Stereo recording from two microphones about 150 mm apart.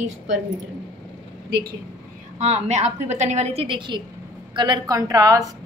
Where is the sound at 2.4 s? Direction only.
45° right (ahead or behind).